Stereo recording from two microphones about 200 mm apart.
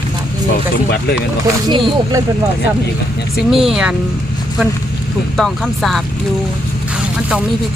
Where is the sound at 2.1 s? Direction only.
15° right (ahead or behind).